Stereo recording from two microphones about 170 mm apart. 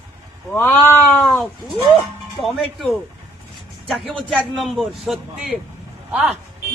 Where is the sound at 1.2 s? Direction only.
Centre (ahead or behind).